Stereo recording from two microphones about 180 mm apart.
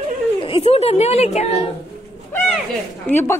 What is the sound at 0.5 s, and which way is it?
Speech, 30° left (ahead or behind).